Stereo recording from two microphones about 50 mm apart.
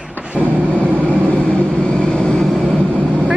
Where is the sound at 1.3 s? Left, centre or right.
Left.